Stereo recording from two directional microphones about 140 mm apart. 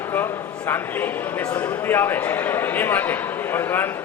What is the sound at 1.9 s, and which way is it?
A man's voice, 15° left (ahead or behind).